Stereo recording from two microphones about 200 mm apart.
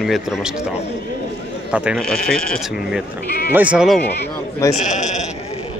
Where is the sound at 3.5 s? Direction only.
5° right (ahead or behind).